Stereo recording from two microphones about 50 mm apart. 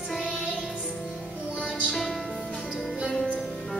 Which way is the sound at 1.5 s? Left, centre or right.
Right.